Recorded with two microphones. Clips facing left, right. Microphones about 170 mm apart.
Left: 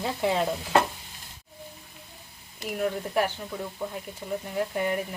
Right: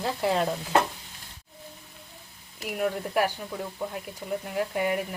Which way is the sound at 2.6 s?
5° right (ahead or behind).